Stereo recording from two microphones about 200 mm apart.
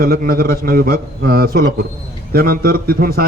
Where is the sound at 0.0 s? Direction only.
45° right (ahead or behind).